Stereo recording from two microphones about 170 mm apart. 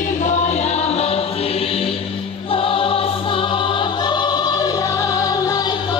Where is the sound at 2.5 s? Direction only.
35° left (ahead or behind).